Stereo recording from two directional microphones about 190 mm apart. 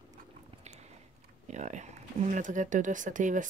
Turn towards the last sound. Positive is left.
turn(degrees=-40)  # may be behind; listen again after turning